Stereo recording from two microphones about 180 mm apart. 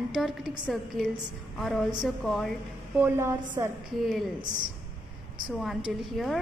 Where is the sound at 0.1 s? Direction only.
Centre (ahead or behind).